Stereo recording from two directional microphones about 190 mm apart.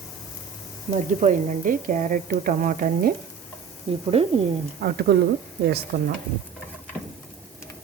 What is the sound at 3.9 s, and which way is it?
Speech, 30° right (ahead or behind).